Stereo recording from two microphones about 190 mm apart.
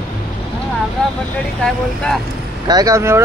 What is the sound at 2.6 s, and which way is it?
Speech, 20° right (ahead or behind).